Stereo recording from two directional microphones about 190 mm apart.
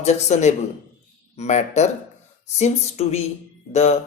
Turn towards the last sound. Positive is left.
turn(degrees=35)  # may be behind; listen again after turning